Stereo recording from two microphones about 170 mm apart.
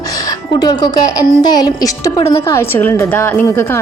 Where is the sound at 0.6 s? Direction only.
25° left (ahead or behind).